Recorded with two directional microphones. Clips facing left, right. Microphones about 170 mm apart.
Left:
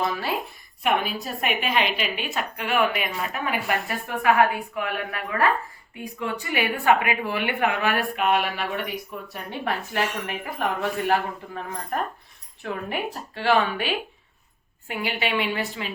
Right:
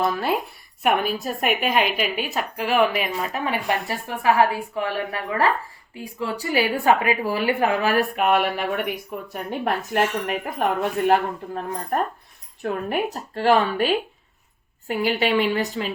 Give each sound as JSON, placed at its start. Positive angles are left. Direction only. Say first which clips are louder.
{"t": 0.0, "sound": "a woman's voice", "louder": "right 4 dB", "side_deg": -50}
{"t": 11.1, "sound": "a woman's voice", "louder": "right 4 dB", "side_deg": -45}